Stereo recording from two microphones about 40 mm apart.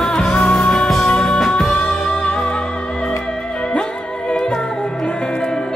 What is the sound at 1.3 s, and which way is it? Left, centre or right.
Music, centre.